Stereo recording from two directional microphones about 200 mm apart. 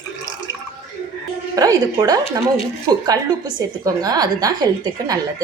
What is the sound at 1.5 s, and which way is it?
Speech, 20° right (ahead or behind).